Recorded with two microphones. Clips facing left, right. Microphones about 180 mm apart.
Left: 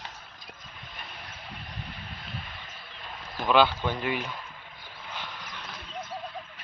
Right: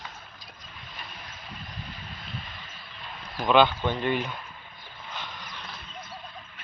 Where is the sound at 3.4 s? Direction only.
5° left (ahead or behind).